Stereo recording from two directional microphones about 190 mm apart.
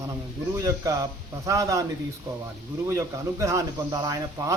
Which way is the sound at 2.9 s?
15° right (ahead or behind).